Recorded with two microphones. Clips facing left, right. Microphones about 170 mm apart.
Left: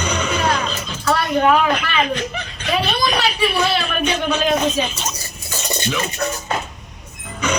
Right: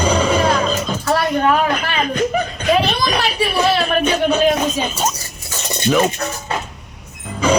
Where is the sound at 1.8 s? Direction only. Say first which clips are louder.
Right 2 dB; 40° right (ahead or behind).